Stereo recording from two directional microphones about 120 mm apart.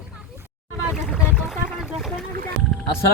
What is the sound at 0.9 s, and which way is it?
Boat, 5° right (ahead or behind).